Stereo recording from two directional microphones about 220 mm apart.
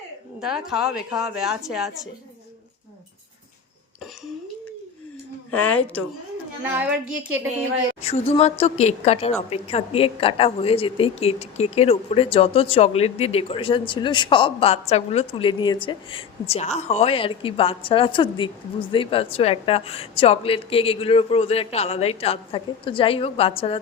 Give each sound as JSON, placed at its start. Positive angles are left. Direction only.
{"t": 0.4, "sound": "speech", "side_deg": 0}
{"t": 5.5, "sound": "speech", "side_deg": 5}
{"t": 6.6, "sound": "a child's voice", "side_deg": -5}
{"t": 8.0, "sound": "a woman's voice", "side_deg": 25}